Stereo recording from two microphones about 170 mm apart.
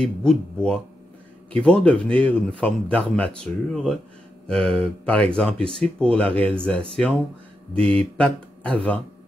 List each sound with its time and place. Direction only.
0.0 s speech: 5° left (ahead or behind)